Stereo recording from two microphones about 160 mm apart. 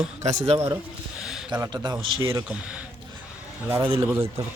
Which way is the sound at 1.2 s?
5° right (ahead or behind).